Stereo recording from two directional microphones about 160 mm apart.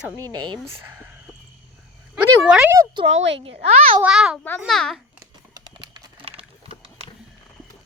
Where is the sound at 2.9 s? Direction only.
40° right (ahead or behind).